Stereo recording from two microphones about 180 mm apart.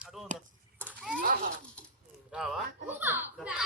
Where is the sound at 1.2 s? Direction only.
45° right (ahead or behind).